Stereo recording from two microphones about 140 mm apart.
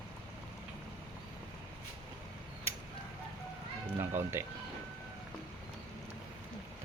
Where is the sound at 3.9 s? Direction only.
20° right (ahead or behind).